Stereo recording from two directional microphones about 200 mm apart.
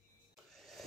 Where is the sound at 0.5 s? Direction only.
Centre (ahead or behind).